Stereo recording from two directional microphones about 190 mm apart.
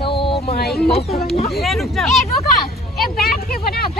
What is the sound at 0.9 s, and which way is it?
Speech, 35° left (ahead or behind).